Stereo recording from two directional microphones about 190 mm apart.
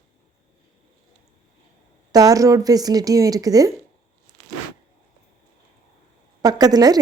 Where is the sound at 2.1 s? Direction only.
20° right (ahead or behind).